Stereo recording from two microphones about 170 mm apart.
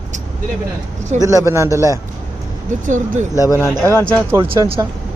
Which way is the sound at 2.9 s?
45° right (ahead or behind).